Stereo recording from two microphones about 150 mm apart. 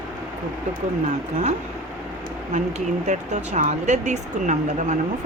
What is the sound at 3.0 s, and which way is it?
Speech, 50° right (ahead or behind).